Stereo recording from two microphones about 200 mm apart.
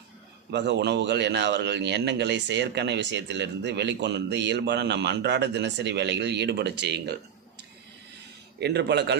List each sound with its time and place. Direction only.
0.5 s a man's voice: 60° right (ahead or behind)
8.5 s a man's voice: 55° right (ahead or behind)